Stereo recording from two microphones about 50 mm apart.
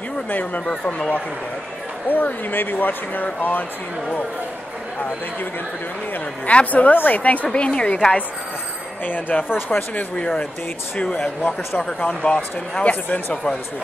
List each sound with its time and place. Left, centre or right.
0.3 s speech: left
0.7 s speech: left
2.0 s speech: left
6.4 s speech: left
7.5 s speech: left
9.0 s speech: left
9.9 s speech: left